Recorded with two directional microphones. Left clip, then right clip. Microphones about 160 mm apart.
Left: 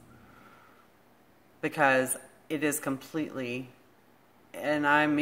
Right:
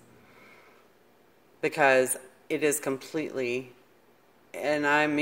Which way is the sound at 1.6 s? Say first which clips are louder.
Right 3 dB; 20° right (ahead or behind).